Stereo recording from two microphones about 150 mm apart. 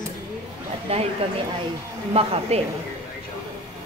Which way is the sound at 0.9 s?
40° right (ahead or behind).